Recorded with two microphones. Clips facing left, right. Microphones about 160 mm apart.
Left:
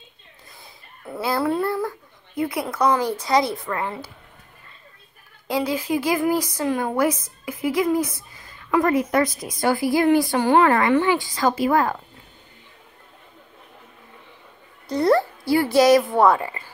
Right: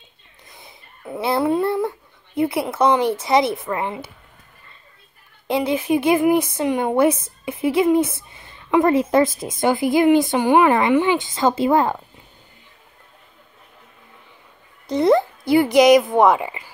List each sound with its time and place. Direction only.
0.5 s speech: 20° right (ahead or behind)
5.5 s speech: 25° right (ahead or behind)
14.9 s speech: 20° right (ahead or behind)